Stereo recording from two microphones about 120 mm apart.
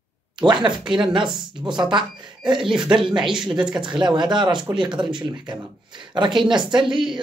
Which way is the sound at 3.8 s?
40° right (ahead or behind).